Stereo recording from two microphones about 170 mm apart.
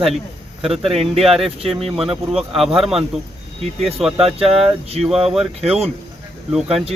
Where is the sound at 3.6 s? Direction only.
40° right (ahead or behind).